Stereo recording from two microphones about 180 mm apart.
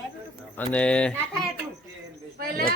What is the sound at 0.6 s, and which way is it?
Speech, 5° left (ahead or behind).